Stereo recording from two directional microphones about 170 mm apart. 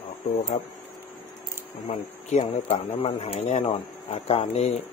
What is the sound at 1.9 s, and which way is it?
Speech, 40° left (ahead or behind).